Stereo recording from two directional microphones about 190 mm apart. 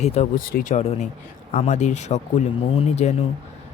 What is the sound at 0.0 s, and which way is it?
Speech, 35° left (ahead or behind).